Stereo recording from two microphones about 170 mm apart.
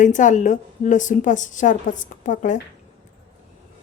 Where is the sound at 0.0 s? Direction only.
45° left (ahead or behind).